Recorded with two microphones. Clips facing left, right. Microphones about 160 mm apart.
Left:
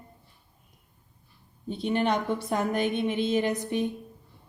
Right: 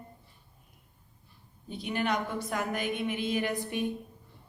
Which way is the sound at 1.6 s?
25° left (ahead or behind).